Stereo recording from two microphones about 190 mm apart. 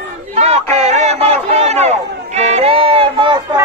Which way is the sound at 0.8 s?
35° right (ahead or behind).